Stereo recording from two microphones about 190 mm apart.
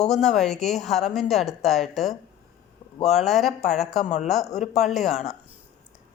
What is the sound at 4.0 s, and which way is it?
Speech, 40° left (ahead or behind).